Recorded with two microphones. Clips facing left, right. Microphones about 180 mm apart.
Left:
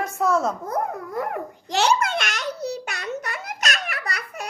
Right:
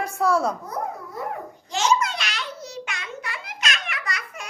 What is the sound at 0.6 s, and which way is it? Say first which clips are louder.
Babbling: left 4 dB; 55° left (ahead or behind).